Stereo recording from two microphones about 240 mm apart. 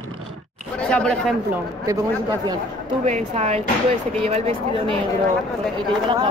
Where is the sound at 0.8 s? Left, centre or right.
Centre.